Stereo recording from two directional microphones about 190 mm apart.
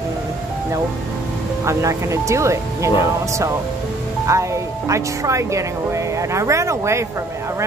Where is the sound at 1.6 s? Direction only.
15° right (ahead or behind).